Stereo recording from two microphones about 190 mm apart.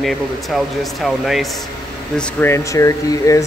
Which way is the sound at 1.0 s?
Centre (ahead or behind).